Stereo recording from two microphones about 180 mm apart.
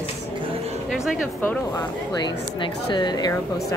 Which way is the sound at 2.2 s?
25° left (ahead or behind).